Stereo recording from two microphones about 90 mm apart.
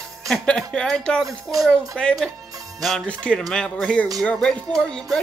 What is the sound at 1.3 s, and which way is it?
Speech, 40° right (ahead or behind).